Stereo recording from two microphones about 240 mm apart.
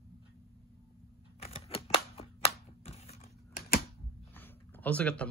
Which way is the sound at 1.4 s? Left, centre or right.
Left.